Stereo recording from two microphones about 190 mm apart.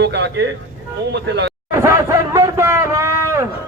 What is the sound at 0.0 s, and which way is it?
Speech, 60° right (ahead or behind).